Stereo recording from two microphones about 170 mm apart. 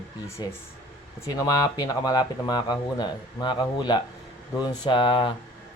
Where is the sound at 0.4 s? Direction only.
25° left (ahead or behind).